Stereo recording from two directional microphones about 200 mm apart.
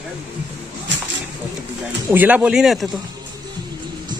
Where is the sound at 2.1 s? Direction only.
10° right (ahead or behind).